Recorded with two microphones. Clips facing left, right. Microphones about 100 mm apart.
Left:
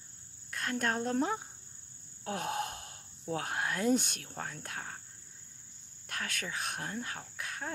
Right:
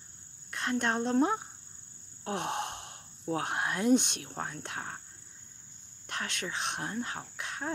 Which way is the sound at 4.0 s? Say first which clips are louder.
Right 3 dB; 20° right (ahead or behind).